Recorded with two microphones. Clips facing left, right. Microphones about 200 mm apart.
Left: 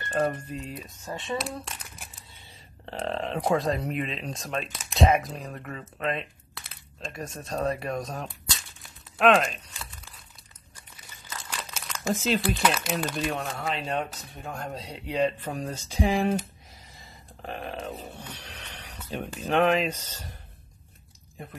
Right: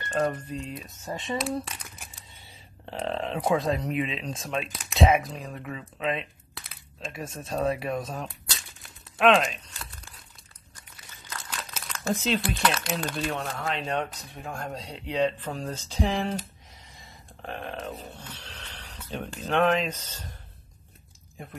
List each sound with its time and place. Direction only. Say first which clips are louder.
0.1 s speech: even; 5° left (ahead or behind)
11.1 s crumpling: even; centre (ahead or behind)
12.1 s speech: left 1 dB; 5° left (ahead or behind)
18.2 s a sound: left 1 dB; 15° left (ahead or behind)
19.0 s speech: left 1 dB; 10° left (ahead or behind)
21.4 s speech: left 1 dB; centre (ahead or behind)